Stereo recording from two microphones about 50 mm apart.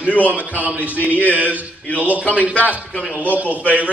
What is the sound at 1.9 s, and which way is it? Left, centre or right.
A man's voice, left.